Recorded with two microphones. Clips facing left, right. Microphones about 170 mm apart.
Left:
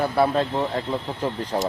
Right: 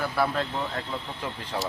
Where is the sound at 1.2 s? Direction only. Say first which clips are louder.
Left 10 dB; 40° left (ahead or behind).